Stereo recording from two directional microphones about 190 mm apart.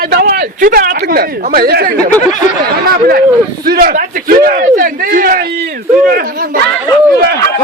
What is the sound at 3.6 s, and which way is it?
A man's voice, 50° right (ahead or behind).